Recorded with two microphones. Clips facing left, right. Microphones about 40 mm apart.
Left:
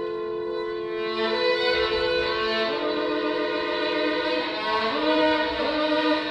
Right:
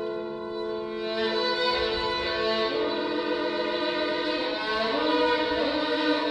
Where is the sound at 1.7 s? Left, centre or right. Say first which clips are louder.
Left 4 dB; left.